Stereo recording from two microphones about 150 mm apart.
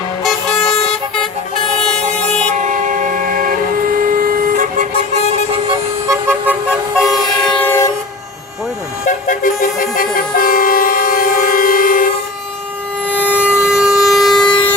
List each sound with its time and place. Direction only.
4.2 s vehicle: 70° right (ahead or behind)
6.1 s vehicle: 15° right (ahead or behind)
7.6 s vehicle: 15° left (ahead or behind)
9.0 s vehicle: 60° left (ahead or behind)
13.2 s siren: 10° right (ahead or behind)
13.7 s vehicle: 5° right (ahead or behind)